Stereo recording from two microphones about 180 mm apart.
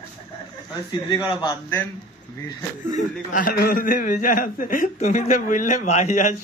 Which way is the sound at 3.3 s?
55° left (ahead or behind).